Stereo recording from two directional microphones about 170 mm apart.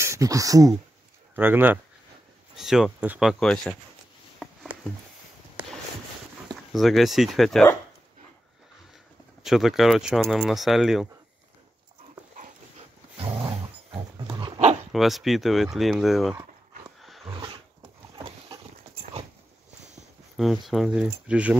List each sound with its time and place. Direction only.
0.0 s speech: 20° right (ahead or behind); by 3.7 s centre (ahead or behind)
6.5 s speech: centre (ahead or behind)
9.4 s speech: centre (ahead or behind)
13.2 s roar: 35° right (ahead or behind)
14.1 s dog: 30° right (ahead or behind)
14.9 s speech: centre (ahead or behind)
17.0 s roar: centre (ahead or behind)
17.3 s roaring cats: 30° right (ahead or behind)
18.1 s dog: 30° right (ahead or behind)
19.8 s a sound: 40° right (ahead or behind)
20.3 s speech: centre (ahead or behind)